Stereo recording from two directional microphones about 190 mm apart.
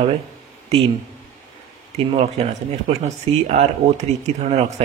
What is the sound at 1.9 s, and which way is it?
Speech, 35° right (ahead or behind).